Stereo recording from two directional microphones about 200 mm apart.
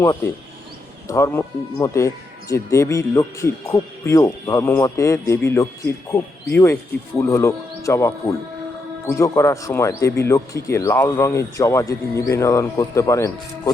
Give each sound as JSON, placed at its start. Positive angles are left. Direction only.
{"t": 1.0, "sound": "speech", "side_deg": 15}